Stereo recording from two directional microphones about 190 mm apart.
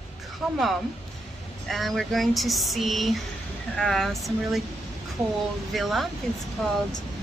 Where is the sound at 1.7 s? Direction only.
Centre (ahead or behind).